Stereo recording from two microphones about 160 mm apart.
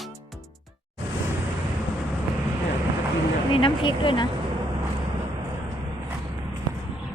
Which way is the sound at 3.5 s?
30° left (ahead or behind).